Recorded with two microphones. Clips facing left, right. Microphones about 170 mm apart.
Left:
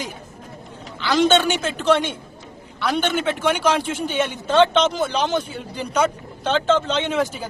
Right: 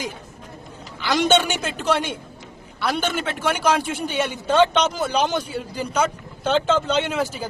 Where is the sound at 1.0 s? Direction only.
10° right (ahead or behind).